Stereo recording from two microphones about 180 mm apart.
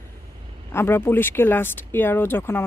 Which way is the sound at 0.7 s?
15° left (ahead or behind).